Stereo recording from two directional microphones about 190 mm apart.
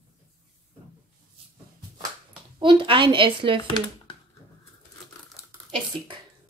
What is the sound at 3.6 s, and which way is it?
Speech, 25° left (ahead or behind).